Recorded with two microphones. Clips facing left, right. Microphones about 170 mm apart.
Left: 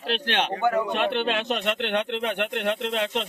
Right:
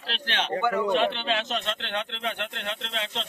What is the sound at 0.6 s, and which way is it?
Speech, 45° left (ahead or behind).